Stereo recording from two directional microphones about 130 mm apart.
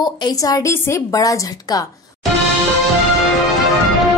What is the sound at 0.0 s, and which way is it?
A woman's voice, 30° left (ahead or behind).